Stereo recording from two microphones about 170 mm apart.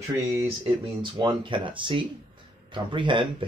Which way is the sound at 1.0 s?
25° right (ahead or behind).